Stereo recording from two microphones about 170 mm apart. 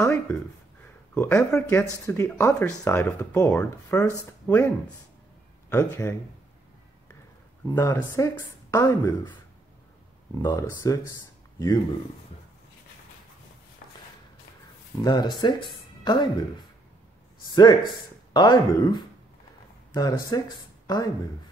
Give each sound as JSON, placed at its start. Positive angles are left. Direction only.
{"t": 0.0, "sound": "speech", "side_deg": 15}
{"t": 7.6, "sound": "speech", "side_deg": 20}
{"t": 10.4, "sound": "speech", "side_deg": 20}
{"t": 15.0, "sound": "speech", "side_deg": 25}
{"t": 17.6, "sound": "speech", "side_deg": 25}